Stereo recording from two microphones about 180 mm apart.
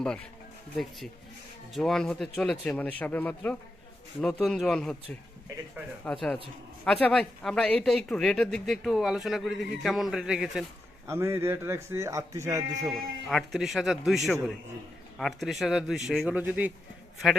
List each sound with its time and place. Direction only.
1.7 s speech: 5° left (ahead or behind)
6.1 s speech: 5° left (ahead or behind)
11.0 s a man's voice: 15° right (ahead or behind)
13.2 s speech: centre (ahead or behind)
15.2 s speech: centre (ahead or behind)